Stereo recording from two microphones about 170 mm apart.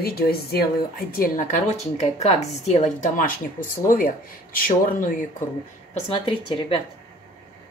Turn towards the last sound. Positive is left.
turn(degrees=30)  # may be behind; listen again after turning